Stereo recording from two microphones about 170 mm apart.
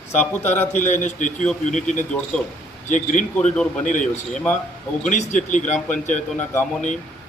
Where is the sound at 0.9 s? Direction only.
45° left (ahead or behind).